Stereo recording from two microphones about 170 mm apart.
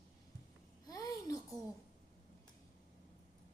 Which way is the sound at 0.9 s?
20° left (ahead or behind).